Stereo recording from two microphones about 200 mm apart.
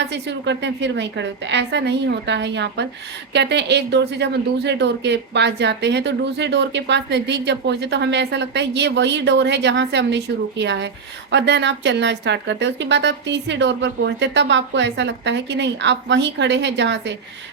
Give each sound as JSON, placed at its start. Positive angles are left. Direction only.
{"t": 0.1, "sound": "speech", "side_deg": -60}